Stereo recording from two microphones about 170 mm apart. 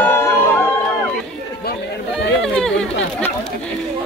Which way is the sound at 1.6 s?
70° left (ahead or behind).